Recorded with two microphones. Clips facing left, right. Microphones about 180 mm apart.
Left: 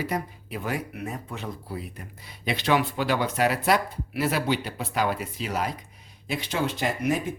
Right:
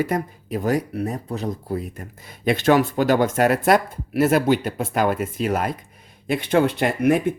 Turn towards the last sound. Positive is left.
turn(degrees=-60)  # may be behind; listen again after turning